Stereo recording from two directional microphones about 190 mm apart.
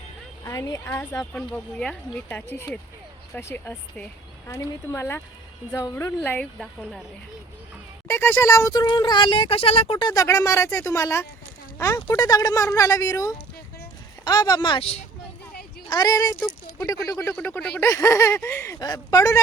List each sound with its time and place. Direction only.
0.4 s speech: 15° left (ahead or behind)
1.2 s speech: 5° left (ahead or behind)
8.0 s speech: 10° left (ahead or behind); by 15.0 s 30° left (ahead or behind)
15.9 s speech: 20° left (ahead or behind)